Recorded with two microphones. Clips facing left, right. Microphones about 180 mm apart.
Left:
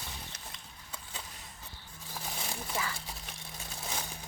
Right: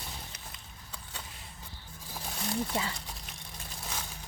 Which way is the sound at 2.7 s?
25° right (ahead or behind).